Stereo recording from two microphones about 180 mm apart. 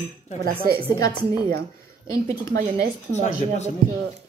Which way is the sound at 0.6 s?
55° right (ahead or behind).